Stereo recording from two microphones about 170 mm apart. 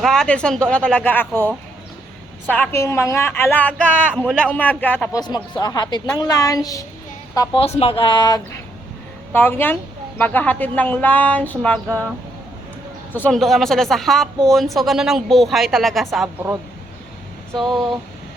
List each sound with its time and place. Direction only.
0.0 s speech: 5° left (ahead or behind)
2.5 s a woman's voice: 15° left (ahead or behind)
5.2 s a woman's voice: 25° left (ahead or behind)
7.3 s a woman's voice: 30° left (ahead or behind)
9.3 s a woman's voice: 10° left (ahead or behind)
13.1 s speech: 5° left (ahead or behind)
17.5 s speech: centre (ahead or behind)